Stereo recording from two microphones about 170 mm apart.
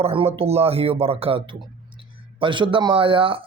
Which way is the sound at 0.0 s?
35° right (ahead or behind).